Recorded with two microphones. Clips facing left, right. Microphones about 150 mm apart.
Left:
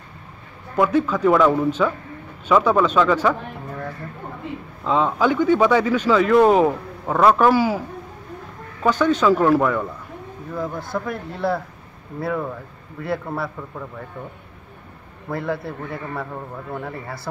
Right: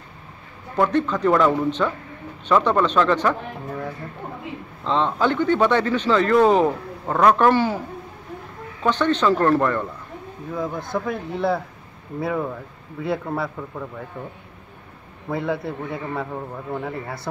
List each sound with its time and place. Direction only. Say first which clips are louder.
0.7 s speech: left 1 dB; 5° left (ahead or behind)
4.8 s speech: left 2 dB; 5° left (ahead or behind)
8.8 s a man's voice: left 2 dB; 10° left (ahead or behind)
11.2 s speech: right 1 dB; 20° right (ahead or behind)
12.2 s a man's voice: even; 5° right (ahead or behind)
15.2 s a man's voice: right 1 dB; centre (ahead or behind)